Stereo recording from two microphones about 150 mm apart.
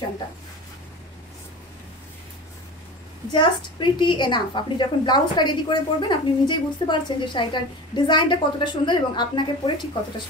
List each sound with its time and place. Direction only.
3.3 s a woman's voice: 30° left (ahead or behind)